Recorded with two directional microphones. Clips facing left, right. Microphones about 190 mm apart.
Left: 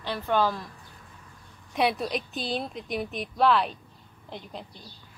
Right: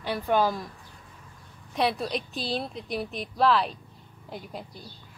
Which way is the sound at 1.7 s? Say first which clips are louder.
Left 1 dB; 5° left (ahead or behind).